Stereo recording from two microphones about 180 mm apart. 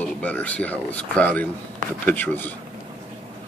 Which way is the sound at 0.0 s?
10° left (ahead or behind).